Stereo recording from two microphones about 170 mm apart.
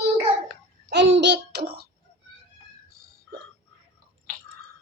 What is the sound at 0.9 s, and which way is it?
Babbling, 90° right.